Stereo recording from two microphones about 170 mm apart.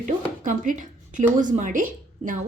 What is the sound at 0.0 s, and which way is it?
A woman's voice, 50° right (ahead or behind).